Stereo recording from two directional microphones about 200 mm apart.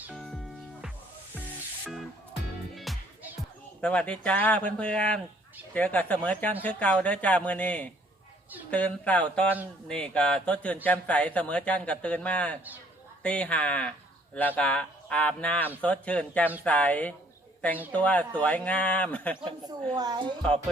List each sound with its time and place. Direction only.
0.0 s music: centre (ahead or behind)
1.8 s music: centre (ahead or behind)
3.8 s speech: 5° left (ahead or behind)
19.4 s a woman's voice: 25° right (ahead or behind)